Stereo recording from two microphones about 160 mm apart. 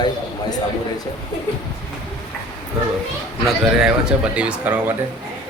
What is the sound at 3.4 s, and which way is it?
Speech, centre (ahead or behind).